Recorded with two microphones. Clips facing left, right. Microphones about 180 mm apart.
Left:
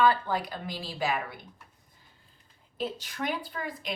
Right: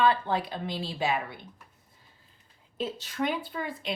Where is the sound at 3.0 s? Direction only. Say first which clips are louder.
Right 3 dB; 25° right (ahead or behind).